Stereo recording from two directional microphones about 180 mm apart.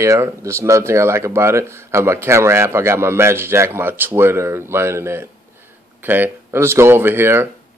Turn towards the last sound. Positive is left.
turn(degrees=-15)  # may be behind; listen again after turning